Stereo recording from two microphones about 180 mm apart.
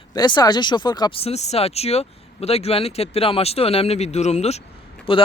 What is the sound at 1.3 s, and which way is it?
Speech, 35° left (ahead or behind).